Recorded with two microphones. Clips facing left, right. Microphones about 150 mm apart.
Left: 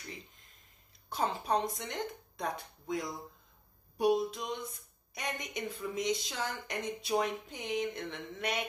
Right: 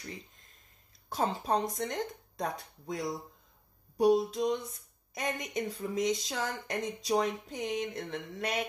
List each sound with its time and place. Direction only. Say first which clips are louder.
1.1 s speech: right 2 dB; 45° right (ahead or behind)